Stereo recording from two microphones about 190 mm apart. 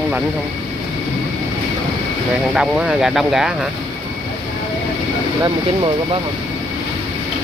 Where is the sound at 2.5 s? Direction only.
Centre (ahead or behind).